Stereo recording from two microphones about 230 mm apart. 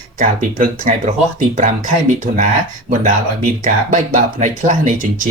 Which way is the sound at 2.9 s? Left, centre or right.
Right.